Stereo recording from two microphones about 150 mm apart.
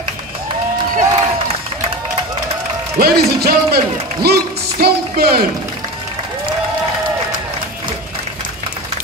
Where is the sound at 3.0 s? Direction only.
90° right.